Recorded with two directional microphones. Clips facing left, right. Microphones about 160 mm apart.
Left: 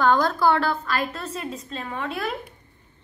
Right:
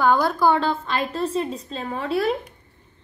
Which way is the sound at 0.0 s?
10° right (ahead or behind).